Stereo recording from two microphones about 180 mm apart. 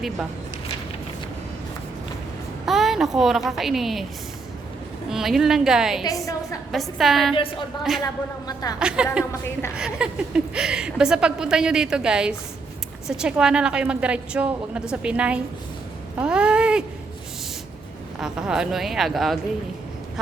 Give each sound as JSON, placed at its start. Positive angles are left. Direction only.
{"t": 2.6, "sound": "a woman's voice", "side_deg": 0}
{"t": 5.0, "sound": "a woman's voice", "side_deg": 0}
{"t": 6.0, "sound": "a woman's voice", "side_deg": 20}
{"t": 6.7, "sound": "a woman's voice", "side_deg": 0}
{"t": 8.0, "sound": "a woman's voice", "side_deg": 20}
{"t": 8.8, "sound": "a woman's voice", "side_deg": -5}
{"t": 18.2, "sound": "a woman's voice", "side_deg": -5}